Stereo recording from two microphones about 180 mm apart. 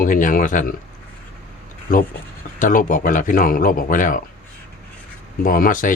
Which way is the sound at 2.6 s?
50° left (ahead or behind).